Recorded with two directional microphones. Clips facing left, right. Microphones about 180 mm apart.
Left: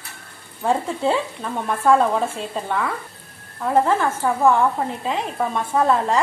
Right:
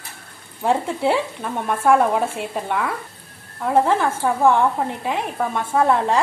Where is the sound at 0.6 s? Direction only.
15° right (ahead or behind).